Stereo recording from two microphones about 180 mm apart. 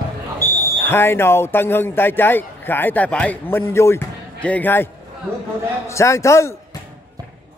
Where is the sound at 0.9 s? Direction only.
15° left (ahead or behind).